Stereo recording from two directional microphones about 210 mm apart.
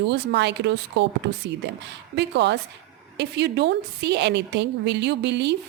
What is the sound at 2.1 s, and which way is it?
A woman's voice, 55° right (ahead or behind).